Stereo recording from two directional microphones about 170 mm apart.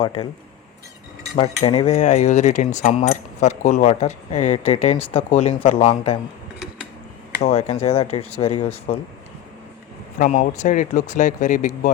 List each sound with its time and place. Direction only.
0.0 s cutlery: 30° left (ahead or behind)
1.4 s cutlery: 35° left (ahead or behind)
7.4 s cutlery: 40° left (ahead or behind)
10.2 s speech: 50° left (ahead or behind)